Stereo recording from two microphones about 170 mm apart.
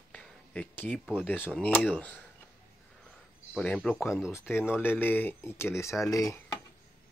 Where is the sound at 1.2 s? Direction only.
10° left (ahead or behind).